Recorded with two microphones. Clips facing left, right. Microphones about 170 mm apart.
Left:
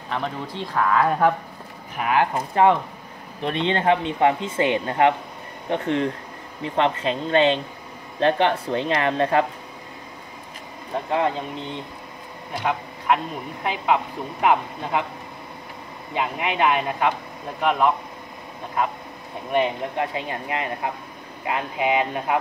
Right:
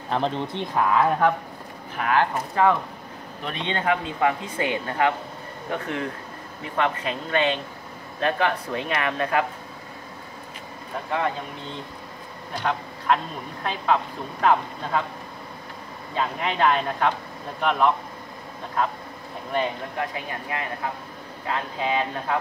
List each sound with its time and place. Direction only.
0.1 s speech: 25° right (ahead or behind)
0.9 s speech: centre (ahead or behind)
2.3 s speech: 20° left (ahead or behind)
11.1 s speech: 25° left (ahead or behind)
12.5 s speech: 10° left (ahead or behind)
16.2 s speech: 10° left (ahead or behind)
19.5 s speech: 20° left (ahead or behind)